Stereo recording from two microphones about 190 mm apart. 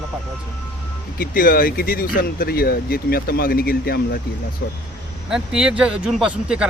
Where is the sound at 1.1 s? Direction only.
50° left (ahead or behind).